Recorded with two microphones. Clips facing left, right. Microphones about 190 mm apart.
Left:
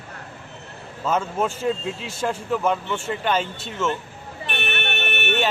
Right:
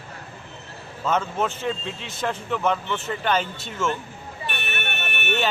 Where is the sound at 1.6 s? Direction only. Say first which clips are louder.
Left 4 dB; 35° left (ahead or behind).